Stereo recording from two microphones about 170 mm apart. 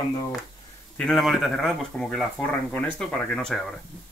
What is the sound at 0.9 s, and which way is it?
Speech, 5° left (ahead or behind).